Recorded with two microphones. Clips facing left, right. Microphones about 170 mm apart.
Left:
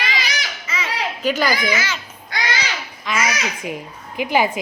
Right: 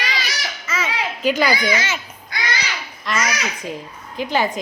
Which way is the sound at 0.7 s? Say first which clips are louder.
Right 3 dB; 45° right (ahead or behind).